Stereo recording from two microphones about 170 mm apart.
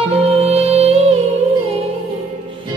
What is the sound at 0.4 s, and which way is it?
Music, 35° right (ahead or behind).